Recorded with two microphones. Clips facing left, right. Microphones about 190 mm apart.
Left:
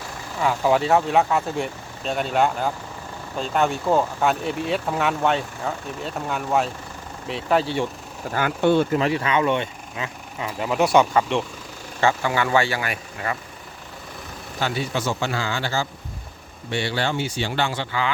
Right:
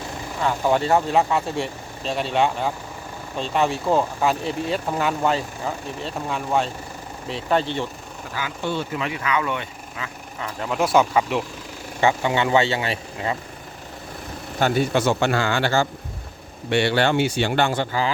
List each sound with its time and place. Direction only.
0.4 s speech: 5° left (ahead or behind)
8.3 s speech: 55° left (ahead or behind)
9.0 s speech: 35° left (ahead or behind)
10.6 s speech: centre (ahead or behind)
11.9 s speech: 20° right (ahead or behind)
14.6 s speech: 50° right (ahead or behind)